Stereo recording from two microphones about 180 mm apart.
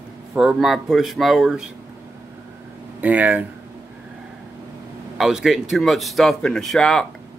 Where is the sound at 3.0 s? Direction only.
10° right (ahead or behind).